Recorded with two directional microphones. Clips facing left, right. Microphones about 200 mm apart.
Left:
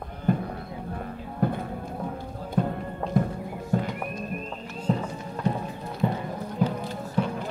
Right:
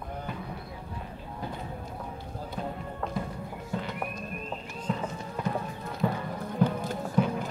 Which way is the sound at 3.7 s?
50° left (ahead or behind).